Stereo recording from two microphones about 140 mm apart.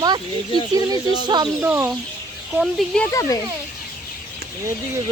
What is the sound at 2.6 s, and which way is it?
Speech, 5° left (ahead or behind).